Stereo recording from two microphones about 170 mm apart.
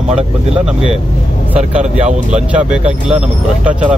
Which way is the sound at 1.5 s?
40° right (ahead or behind).